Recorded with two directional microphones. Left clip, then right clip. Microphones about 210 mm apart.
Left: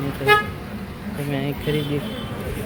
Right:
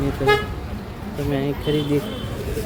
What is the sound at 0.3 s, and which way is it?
Vehicle, 50° left (ahead or behind).